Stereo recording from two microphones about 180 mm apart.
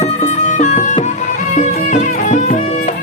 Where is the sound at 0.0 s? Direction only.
40° left (ahead or behind).